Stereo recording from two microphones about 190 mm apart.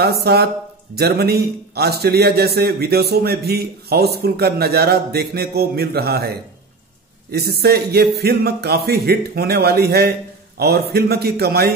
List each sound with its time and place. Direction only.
0.0 s a man's voice: 55° right (ahead or behind)